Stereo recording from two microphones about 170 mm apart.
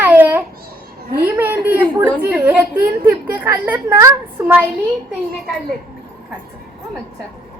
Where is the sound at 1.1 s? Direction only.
65° right (ahead or behind).